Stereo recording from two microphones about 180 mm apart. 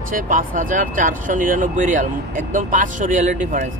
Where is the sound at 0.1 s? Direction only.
50° right (ahead or behind).